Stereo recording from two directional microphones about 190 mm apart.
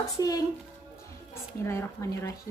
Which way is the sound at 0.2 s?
20° left (ahead or behind).